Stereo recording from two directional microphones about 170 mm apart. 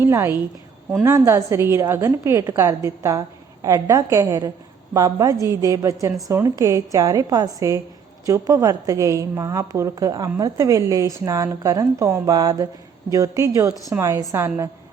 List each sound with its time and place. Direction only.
0.0 s a woman's voice: 15° right (ahead or behind)